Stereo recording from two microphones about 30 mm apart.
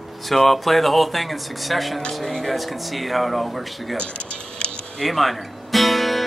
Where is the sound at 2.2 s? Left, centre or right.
Centre.